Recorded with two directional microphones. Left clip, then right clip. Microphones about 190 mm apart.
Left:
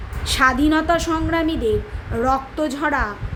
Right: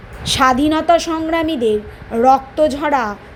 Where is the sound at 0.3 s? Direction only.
20° right (ahead or behind).